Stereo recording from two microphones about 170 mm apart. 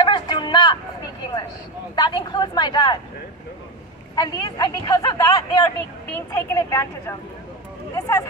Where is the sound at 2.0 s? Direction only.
25° left (ahead or behind).